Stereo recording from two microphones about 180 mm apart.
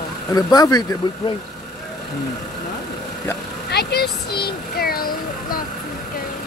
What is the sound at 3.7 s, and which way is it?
Speech, 65° left (ahead or behind).